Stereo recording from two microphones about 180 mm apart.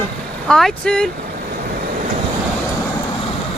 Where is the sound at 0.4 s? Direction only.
5° left (ahead or behind).